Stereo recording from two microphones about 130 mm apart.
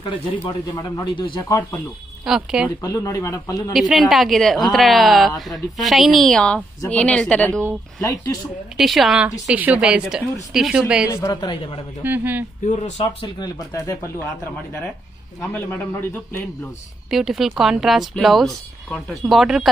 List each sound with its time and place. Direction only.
0.1 s a man's voice: 40° left (ahead or behind)
0.7 s a man's voice: 30° left (ahead or behind)
1.4 s a man's voice: 20° left (ahead or behind)
2.2 s speech: 5° right (ahead or behind)
2.8 s a man's voice: 30° left (ahead or behind)
3.7 s speech: centre (ahead or behind)
8.0 s a man's voice: 25° left (ahead or behind)
8.7 s a woman's voice: centre (ahead or behind)
11.1 s a man's voice: 20° left (ahead or behind)
11.4 s a man's voice: 40° left (ahead or behind)
12.0 s a woman's voice: 15° right (ahead or behind)
12.6 s speech: 65° left (ahead or behind); by 13.3 s 50° left (ahead or behind)
17.1 s speech: centre (ahead or behind)